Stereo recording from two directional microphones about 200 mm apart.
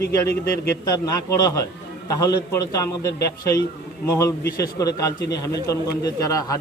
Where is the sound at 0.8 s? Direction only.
15° left (ahead or behind).